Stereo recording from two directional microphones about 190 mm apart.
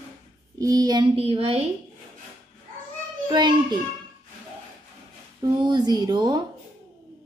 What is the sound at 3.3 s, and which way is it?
Speech, 25° right (ahead or behind).